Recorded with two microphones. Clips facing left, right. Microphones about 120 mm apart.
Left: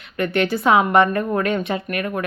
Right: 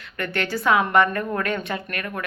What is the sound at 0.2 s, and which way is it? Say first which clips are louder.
A woman's voice: left 6 dB; 20° left (ahead or behind).